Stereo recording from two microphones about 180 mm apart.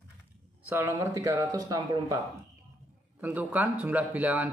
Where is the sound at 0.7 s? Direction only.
15° right (ahead or behind).